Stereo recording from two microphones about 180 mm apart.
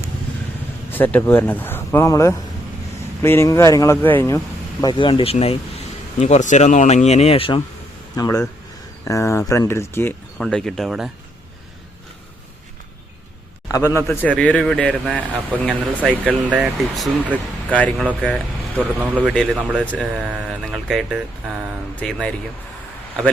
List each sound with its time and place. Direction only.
0.9 s a man's voice: 10° left (ahead or behind)
4.8 s speech: 25° left (ahead or behind)
8.1 s a man's voice: 20° left (ahead or behind); by 11.1 s centre (ahead or behind)
13.7 s a man's voice: 15° left (ahead or behind)
16.0 s speech: 10° right (ahead or behind)
18.9 s speech: 10° right (ahead or behind)
19.8 s a man's voice: 5° left (ahead or behind)
20.1 s speech: 5° right (ahead or behind)